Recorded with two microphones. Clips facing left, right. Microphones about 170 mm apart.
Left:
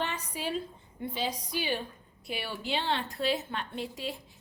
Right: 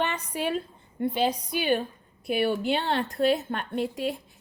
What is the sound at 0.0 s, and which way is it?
A woman's voice, 60° right (ahead or behind).